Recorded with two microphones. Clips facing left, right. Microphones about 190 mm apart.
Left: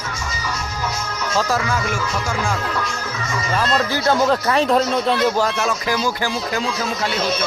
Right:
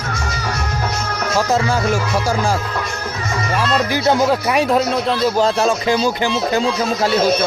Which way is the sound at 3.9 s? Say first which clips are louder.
Right 2 dB; 15° right (ahead or behind).